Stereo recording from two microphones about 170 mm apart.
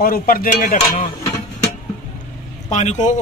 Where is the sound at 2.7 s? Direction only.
45° left (ahead or behind).